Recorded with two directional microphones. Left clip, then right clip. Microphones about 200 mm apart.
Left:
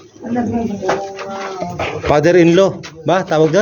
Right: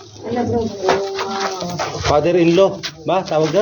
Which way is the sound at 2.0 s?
60° left (ahead or behind).